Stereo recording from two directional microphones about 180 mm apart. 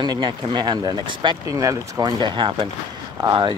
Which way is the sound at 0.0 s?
25° right (ahead or behind).